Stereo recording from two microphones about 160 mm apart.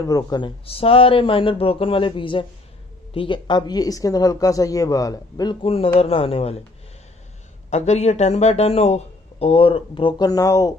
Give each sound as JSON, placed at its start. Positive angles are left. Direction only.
{"t": 0.0, "sound": "speech", "side_deg": 25}
{"t": 0.7, "sound": "speech", "side_deg": 35}
{"t": 7.7, "sound": "speech", "side_deg": 45}